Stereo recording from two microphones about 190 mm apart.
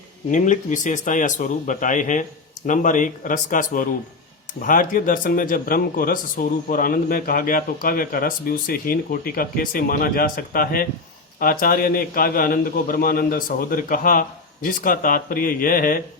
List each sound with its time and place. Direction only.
0.3 s speech: 40° left (ahead or behind)